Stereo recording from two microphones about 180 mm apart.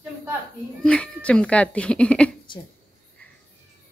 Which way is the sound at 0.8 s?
5° left (ahead or behind).